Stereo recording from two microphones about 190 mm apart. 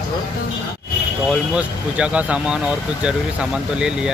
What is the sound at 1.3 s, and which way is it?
Speech, 5° right (ahead or behind).